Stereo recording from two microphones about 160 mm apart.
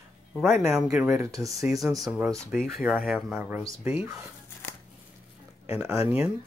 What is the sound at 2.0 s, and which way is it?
Speech, centre (ahead or behind).